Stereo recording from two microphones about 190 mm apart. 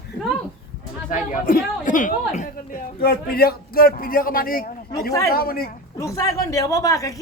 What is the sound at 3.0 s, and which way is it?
A man's voice, 55° left (ahead or behind).